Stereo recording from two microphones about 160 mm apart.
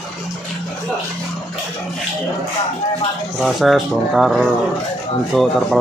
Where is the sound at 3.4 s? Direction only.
Centre (ahead or behind).